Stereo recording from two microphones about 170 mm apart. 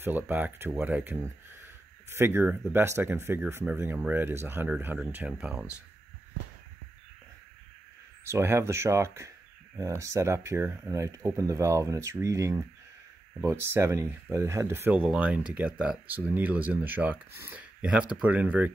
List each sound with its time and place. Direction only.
0.0 s speech: 10° right (ahead or behind)
8.3 s speech: 15° right (ahead or behind)